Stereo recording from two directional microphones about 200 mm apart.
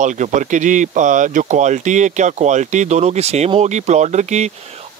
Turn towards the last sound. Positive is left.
turn(degrees=-35)  # may be behind; listen again after turning